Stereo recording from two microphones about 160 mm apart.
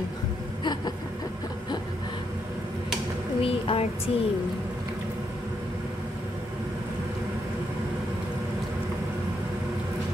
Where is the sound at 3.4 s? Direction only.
35° left (ahead or behind).